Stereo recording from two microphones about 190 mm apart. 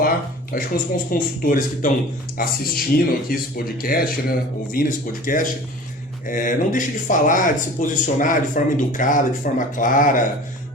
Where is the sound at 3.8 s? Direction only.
50° left (ahead or behind).